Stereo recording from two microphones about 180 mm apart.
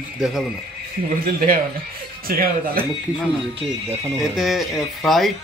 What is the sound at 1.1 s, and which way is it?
Speech, 50° right (ahead or behind).